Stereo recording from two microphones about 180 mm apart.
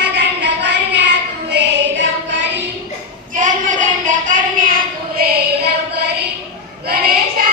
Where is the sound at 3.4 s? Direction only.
45° right (ahead or behind); by 5.7 s 60° right (ahead or behind).